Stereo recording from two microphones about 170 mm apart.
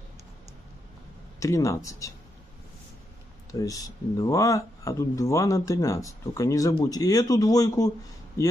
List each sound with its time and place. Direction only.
1.4 s speech: 20° left (ahead or behind)
3.5 s speech: 20° left (ahead or behind)